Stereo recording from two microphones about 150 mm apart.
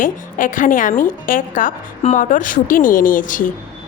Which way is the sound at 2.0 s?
50° left (ahead or behind).